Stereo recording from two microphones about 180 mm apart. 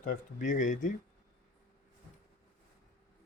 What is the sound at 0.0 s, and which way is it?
Speech, 50° left (ahead or behind).